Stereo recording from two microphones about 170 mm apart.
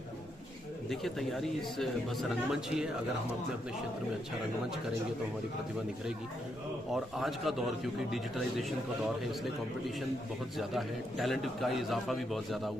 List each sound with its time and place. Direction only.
0.9 s a man's voice: centre (ahead or behind)
6.9 s a man's voice: centre (ahead or behind)
10.6 s a man's voice: centre (ahead or behind)